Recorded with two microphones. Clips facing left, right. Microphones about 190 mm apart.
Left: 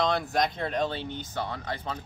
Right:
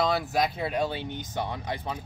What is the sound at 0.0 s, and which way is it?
Speech, 5° right (ahead or behind).